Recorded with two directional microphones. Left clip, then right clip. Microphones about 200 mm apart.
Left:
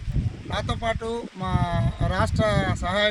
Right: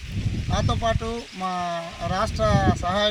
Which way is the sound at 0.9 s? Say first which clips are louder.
Even; 20° left (ahead or behind).